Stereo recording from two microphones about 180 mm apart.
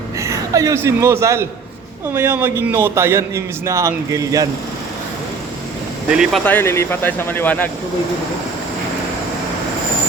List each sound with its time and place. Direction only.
0.2 s a man's voice: 15° right (ahead or behind)
6.1 s speech: 5° right (ahead or behind)
6.4 s speech: 10° left (ahead or behind)